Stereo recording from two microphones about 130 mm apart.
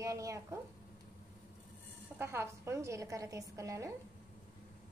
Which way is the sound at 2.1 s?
20° right (ahead or behind).